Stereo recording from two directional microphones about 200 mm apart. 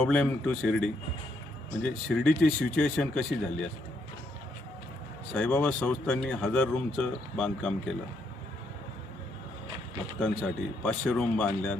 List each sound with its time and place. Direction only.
0.0 s speech: 5° left (ahead or behind)
5.3 s speech: 5° left (ahead or behind)
10.2 s speech: 5° left (ahead or behind)